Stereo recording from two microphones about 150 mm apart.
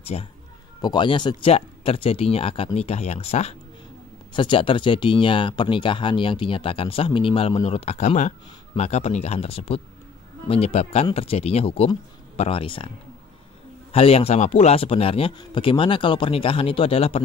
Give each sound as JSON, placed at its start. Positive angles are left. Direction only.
{"t": 0.0, "sound": "speech", "side_deg": 40}
{"t": 0.7, "sound": "speech", "side_deg": 30}
{"t": 13.9, "sound": "speech", "side_deg": 40}